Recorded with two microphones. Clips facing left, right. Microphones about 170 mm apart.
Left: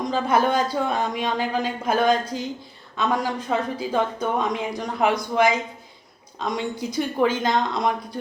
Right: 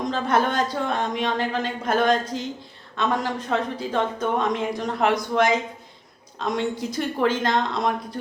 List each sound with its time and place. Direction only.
0.1 s speech: centre (ahead or behind)